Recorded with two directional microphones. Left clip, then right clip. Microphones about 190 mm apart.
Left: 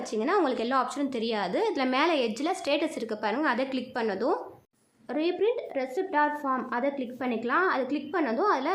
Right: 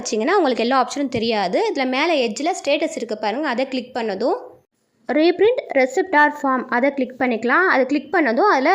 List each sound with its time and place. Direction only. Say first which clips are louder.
0.1 s a woman's voice: right 9 dB; 35° right (ahead or behind)
5.0 s a woman's voice: right 11 dB; 35° right (ahead or behind)